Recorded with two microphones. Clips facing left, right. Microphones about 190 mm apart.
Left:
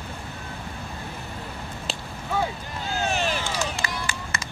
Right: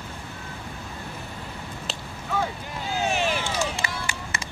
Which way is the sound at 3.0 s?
10° right (ahead or behind).